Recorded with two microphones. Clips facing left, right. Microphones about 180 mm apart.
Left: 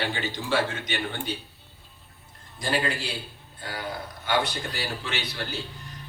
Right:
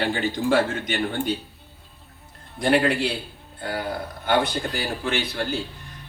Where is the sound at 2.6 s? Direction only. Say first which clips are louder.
Right 8 dB; 60° right (ahead or behind).